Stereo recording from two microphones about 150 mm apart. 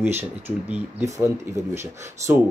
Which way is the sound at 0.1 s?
10° right (ahead or behind).